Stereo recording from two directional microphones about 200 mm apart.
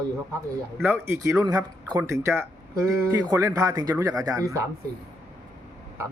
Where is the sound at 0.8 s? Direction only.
10° right (ahead or behind).